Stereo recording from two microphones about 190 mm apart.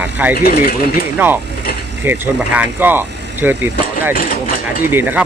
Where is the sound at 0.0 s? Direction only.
10° right (ahead or behind).